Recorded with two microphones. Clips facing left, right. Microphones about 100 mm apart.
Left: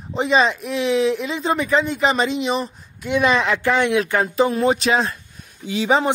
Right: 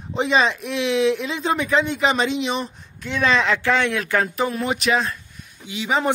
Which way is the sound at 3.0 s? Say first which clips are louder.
Left 2 dB; 15° left (ahead or behind).